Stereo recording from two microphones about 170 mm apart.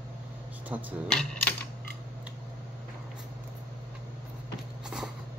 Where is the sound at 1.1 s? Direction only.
5° left (ahead or behind).